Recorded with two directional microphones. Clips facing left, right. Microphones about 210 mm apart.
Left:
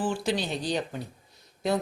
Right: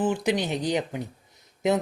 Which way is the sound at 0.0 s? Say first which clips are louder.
Right 4 dB; 20° right (ahead or behind).